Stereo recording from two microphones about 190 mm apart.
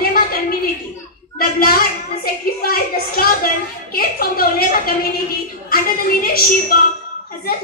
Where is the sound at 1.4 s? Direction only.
50° left (ahead or behind).